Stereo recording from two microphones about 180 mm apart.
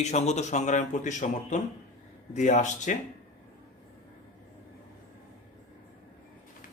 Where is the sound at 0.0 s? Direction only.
40° left (ahead or behind).